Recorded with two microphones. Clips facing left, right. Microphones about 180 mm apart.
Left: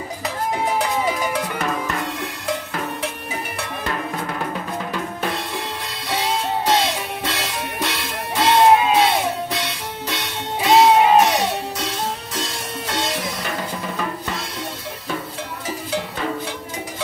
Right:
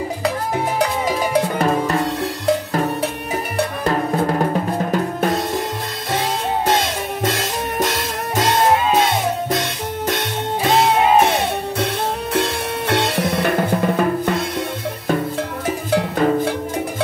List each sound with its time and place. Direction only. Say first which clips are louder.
1.3 s cowbell: right 7 dB; 35° right (ahead or behind)
3.5 s drum: right 9 dB; 40° right (ahead or behind)
6.1 s music: right 1 dB; 50° right (ahead or behind)
12.4 s drum: right 8 dB; 60° right (ahead or behind)
15.9 s music: right 9 dB; 55° right (ahead or behind)